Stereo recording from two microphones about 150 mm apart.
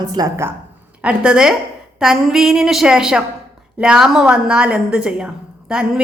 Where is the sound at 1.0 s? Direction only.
5° right (ahead or behind).